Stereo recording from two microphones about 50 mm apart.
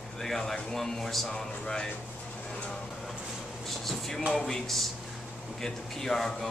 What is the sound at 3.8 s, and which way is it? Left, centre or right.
Speech, centre.